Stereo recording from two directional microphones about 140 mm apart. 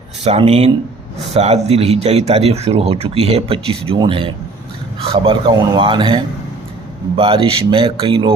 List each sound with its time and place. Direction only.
0.3 s a man's voice: 45° right (ahead or behind)